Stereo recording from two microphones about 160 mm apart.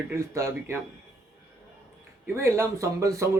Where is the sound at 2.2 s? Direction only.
15° right (ahead or behind).